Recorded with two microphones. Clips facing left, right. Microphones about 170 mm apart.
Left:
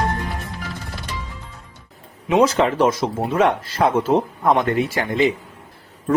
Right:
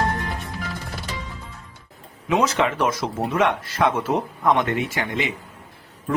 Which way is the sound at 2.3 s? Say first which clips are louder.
Left 4 dB; 30° left (ahead or behind).